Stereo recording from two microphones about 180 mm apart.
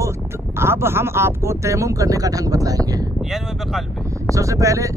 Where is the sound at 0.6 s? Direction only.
15° right (ahead or behind).